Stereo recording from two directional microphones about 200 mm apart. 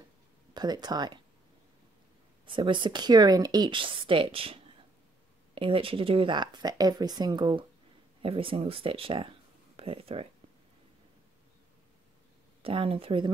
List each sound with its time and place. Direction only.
0.6 s speech: 20° right (ahead or behind)
2.4 s speech: 25° right (ahead or behind)
12.6 s speech: 30° right (ahead or behind)